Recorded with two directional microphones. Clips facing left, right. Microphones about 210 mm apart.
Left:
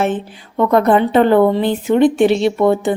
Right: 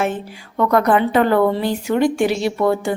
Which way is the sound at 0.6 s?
25° left (ahead or behind).